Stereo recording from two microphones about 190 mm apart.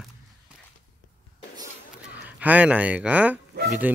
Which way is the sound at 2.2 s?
10° right (ahead or behind).